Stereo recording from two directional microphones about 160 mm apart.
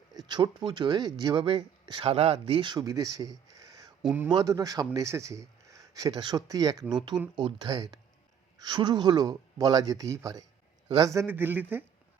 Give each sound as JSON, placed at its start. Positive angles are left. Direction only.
{"t": 0.1, "sound": "speech", "side_deg": -25}
{"t": 4.0, "sound": "a man's voice", "side_deg": -10}
{"t": 4.3, "sound": "a man's voice", "side_deg": -25}